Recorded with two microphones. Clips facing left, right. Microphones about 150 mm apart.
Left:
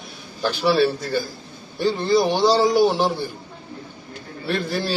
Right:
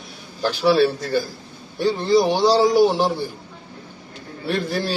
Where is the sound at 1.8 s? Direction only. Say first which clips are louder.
Right 1 dB; 5° left (ahead or behind).